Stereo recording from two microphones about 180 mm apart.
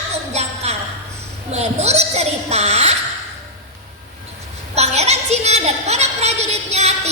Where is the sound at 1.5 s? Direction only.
40° right (ahead or behind).